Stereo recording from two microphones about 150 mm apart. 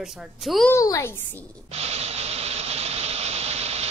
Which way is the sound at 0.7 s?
20° left (ahead or behind).